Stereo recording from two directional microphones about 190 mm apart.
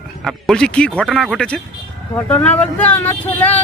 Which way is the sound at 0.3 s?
5° left (ahead or behind).